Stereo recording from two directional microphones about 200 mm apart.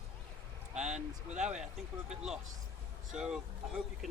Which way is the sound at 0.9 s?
35° right (ahead or behind).